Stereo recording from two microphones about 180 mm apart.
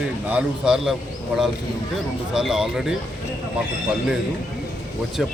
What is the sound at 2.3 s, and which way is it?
Speech, 5° right (ahead or behind).